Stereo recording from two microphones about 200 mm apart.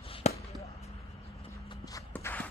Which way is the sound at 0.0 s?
30° left (ahead or behind).